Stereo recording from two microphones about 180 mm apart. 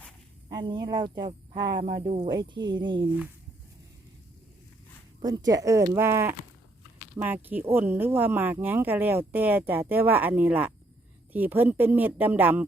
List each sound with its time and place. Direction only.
0.5 s speech: 25° right (ahead or behind)
5.2 s speech: 20° right (ahead or behind)